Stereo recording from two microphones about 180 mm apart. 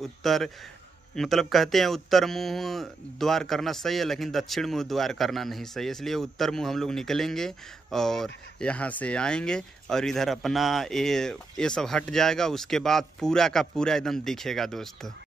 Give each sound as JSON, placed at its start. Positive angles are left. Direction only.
{"t": 0.0, "sound": "speech", "side_deg": 0}